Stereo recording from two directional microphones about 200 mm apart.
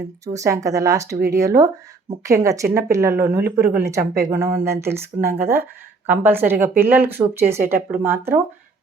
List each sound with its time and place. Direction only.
0.3 s speech: 15° right (ahead or behind)